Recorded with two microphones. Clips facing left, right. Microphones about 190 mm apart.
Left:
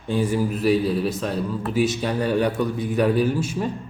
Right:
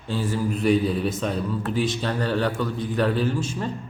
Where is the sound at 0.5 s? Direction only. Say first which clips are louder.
Right 2 dB; centre (ahead or behind).